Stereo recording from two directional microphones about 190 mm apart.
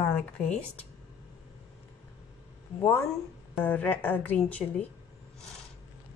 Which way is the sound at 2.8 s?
15° left (ahead or behind).